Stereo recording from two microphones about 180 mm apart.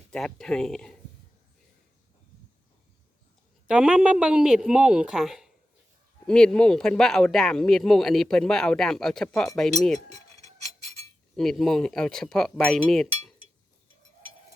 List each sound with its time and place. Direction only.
0.1 s speech: centre (ahead or behind)
3.7 s speech: 5° right (ahead or behind)
11.3 s speech: centre (ahead or behind)